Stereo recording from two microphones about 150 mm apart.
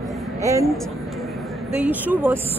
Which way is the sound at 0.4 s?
20° right (ahead or behind).